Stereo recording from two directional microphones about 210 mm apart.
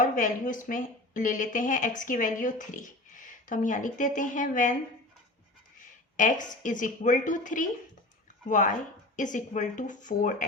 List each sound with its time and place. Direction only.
0.0 s a woman's voice: 40° left (ahead or behind)
6.1 s a woman's voice: 35° left (ahead or behind)